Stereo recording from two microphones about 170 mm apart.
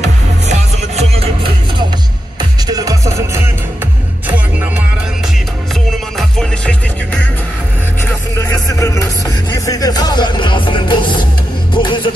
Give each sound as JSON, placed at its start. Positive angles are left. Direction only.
{"t": 0.0, "sound": "music", "side_deg": -40}
{"t": 2.7, "sound": "music", "side_deg": -20}
{"t": 6.1, "sound": "music", "side_deg": 5}
{"t": 8.4, "sound": "music", "side_deg": 15}